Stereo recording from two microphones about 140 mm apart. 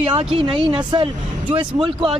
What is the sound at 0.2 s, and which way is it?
Speech, 40° right (ahead or behind).